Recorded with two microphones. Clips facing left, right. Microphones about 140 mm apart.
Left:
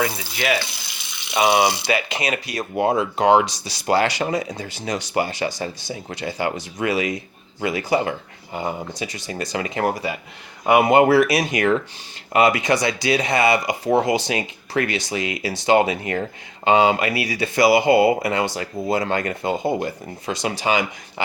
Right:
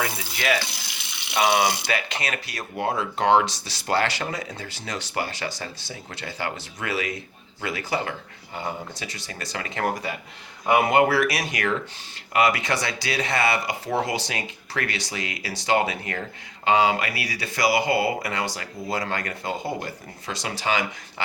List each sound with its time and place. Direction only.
1.3 s speech: 20° left (ahead or behind)